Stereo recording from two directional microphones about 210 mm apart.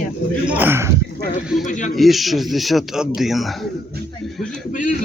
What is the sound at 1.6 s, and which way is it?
Speech, 35° left (ahead or behind).